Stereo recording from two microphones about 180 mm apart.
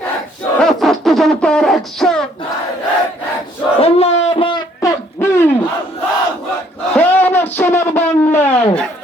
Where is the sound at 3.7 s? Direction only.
35° left (ahead or behind).